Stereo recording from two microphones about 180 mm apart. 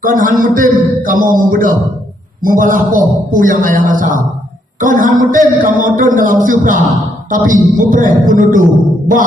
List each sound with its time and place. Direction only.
0.0 s a man's voice: 50° right (ahead or behind)